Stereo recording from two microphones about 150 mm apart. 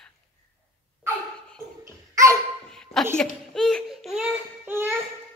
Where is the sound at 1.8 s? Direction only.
20° right (ahead or behind).